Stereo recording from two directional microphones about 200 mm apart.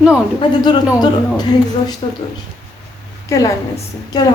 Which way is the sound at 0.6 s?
20° left (ahead or behind).